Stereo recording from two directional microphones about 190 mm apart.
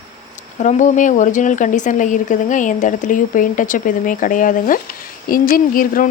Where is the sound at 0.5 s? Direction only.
40° left (ahead or behind).